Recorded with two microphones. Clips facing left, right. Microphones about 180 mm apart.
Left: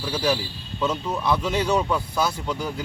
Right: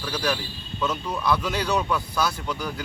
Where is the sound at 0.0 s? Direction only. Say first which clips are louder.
Left 3 dB; 25° left (ahead or behind).